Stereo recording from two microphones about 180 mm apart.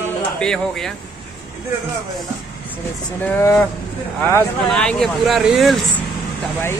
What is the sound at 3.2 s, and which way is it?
Speech, 10° left (ahead or behind).